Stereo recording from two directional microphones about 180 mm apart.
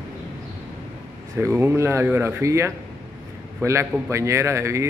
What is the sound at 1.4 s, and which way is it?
A man's voice, 15° right (ahead or behind).